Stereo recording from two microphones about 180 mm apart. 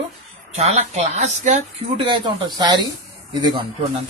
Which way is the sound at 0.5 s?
35° right (ahead or behind).